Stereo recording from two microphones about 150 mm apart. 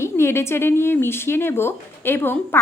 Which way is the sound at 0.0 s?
15° left (ahead or behind).